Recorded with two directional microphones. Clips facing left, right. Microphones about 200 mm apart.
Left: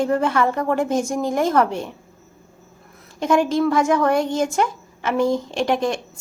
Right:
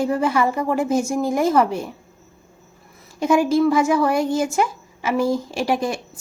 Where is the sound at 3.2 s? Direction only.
10° right (ahead or behind).